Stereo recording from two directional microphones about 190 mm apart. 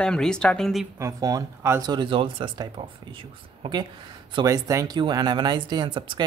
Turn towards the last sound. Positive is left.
turn(degrees=-25)  # may be behind; listen again after turning